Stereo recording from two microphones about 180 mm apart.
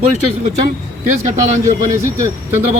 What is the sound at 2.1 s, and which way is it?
Speech, 15° right (ahead or behind).